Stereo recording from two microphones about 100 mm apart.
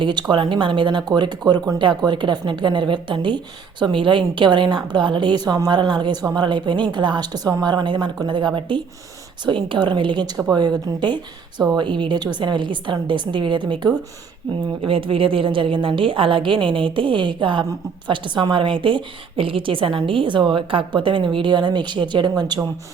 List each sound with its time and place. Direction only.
0.0 s speech: 50° right (ahead or behind)
14.8 s a woman's voice: 65° right (ahead or behind); by 22.6 s 50° right (ahead or behind)